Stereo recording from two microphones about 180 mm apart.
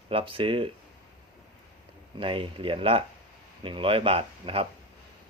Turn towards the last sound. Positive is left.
turn(degrees=-30)  # may be behind; listen again after turning